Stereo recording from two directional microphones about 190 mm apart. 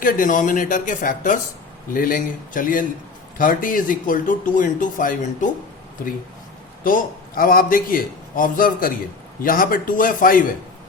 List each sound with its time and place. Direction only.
0.0 s speech: 45° left (ahead or behind)
6.8 s speech: 45° left (ahead or behind)